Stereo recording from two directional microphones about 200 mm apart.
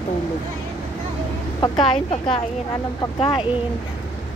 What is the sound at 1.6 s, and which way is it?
Speech, 25° left (ahead or behind).